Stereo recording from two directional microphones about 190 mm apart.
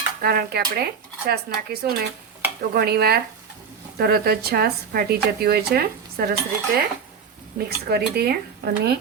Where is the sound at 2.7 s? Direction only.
55° right (ahead or behind).